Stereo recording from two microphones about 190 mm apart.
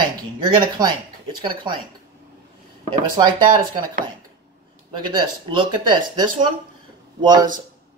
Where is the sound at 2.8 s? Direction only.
25° right (ahead or behind).